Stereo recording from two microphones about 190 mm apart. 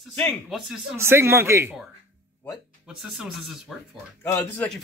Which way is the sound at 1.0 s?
15° right (ahead or behind).